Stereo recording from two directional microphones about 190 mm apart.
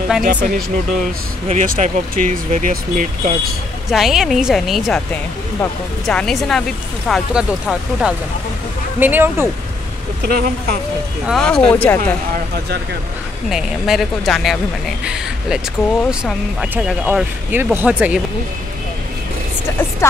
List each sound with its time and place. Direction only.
0.2 s speech: 45° right (ahead or behind)
1.5 s speech: 40° right (ahead or behind)
3.9 s speech: centre (ahead or behind)
10.2 s speech: 55° right (ahead or behind)
11.2 s speech: centre (ahead or behind)
13.5 s speech: centre (ahead or behind)
16.1 s speech: 5° right (ahead or behind)
20.0 s speech: 15° left (ahead or behind)